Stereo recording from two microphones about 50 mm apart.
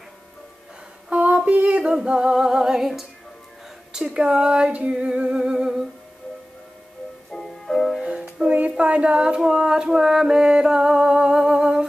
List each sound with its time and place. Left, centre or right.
1.1 s a sound: right
2.0 s female singing: centre
3.9 s female singing: centre
7.2 s music: centre
8.0 s music: centre
8.5 s a sound: right